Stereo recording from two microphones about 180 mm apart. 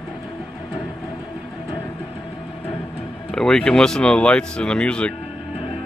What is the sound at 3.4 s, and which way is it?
Speech, 5° left (ahead or behind).